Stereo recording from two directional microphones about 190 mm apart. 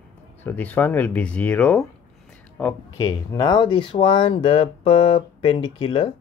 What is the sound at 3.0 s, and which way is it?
Speech, 20° left (ahead or behind).